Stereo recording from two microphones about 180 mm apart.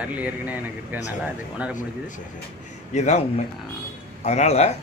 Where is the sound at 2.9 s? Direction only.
40° left (ahead or behind).